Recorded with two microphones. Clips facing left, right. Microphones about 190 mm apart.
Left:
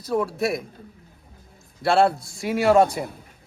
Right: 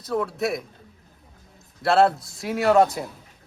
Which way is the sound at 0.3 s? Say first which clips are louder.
Left 1 dB; centre (ahead or behind).